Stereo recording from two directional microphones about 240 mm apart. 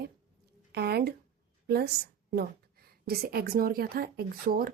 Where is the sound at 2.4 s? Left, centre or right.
Right.